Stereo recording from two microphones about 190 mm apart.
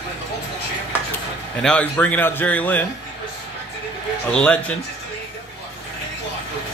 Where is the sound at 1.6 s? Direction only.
5° left (ahead or behind).